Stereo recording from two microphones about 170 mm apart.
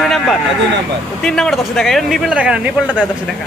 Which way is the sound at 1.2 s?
5° left (ahead or behind).